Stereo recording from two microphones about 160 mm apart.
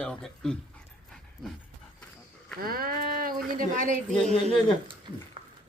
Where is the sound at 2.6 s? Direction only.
65° right (ahead or behind).